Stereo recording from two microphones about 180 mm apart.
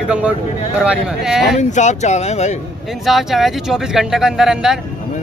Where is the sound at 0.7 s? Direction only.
5° right (ahead or behind).